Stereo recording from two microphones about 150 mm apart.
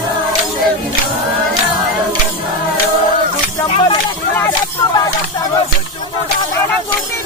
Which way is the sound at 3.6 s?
35° left (ahead or behind).